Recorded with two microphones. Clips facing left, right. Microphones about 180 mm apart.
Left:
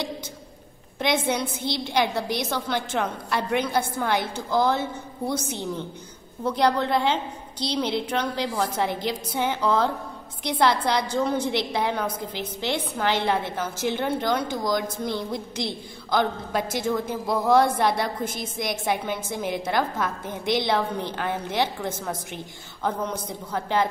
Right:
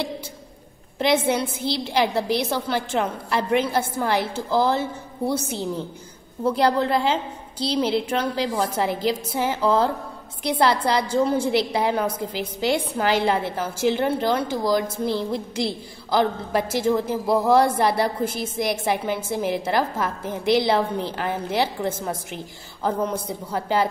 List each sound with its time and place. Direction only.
0.9 s a woman's voice: 5° right (ahead or behind)
1.6 s a woman's voice: 30° right (ahead or behind)
2.2 s a woman's voice: 5° right (ahead or behind)